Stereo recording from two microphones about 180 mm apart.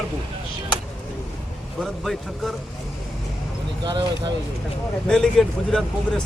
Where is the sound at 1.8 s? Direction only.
Centre (ahead or behind).